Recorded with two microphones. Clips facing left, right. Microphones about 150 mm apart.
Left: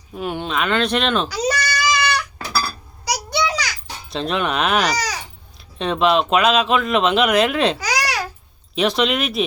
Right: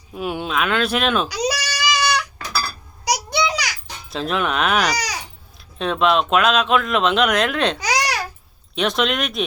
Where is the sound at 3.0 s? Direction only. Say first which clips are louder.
Right 1 dB; 15° right (ahead or behind).